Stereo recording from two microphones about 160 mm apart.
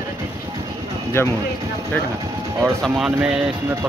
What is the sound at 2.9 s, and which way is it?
Speech, 5° right (ahead or behind).